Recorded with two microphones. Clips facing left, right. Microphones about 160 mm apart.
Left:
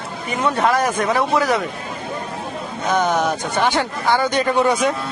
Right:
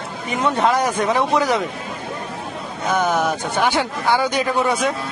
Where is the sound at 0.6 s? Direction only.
15° right (ahead or behind).